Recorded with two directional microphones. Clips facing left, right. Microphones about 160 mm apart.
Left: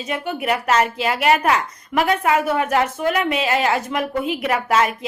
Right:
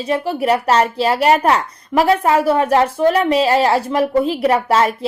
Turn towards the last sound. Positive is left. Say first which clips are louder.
# right 4 dB
turn(degrees=-35)  # may be behind; listen again after turning